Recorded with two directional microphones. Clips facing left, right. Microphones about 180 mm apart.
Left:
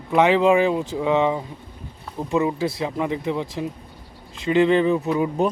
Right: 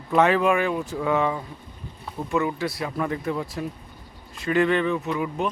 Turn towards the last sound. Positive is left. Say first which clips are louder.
# left 5 dB
turn(degrees=30)  # may be behind; listen again after turning